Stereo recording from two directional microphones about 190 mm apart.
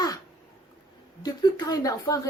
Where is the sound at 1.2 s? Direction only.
20° left (ahead or behind).